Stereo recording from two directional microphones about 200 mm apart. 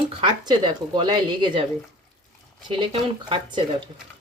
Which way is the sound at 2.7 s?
25° right (ahead or behind).